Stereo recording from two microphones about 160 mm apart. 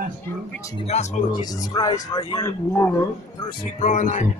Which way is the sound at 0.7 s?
45° left (ahead or behind).